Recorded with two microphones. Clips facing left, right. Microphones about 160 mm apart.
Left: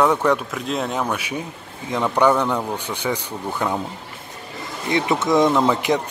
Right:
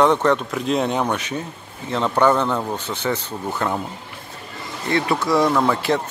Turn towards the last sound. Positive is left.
turn(degrees=15)  # may be behind; listen again after turning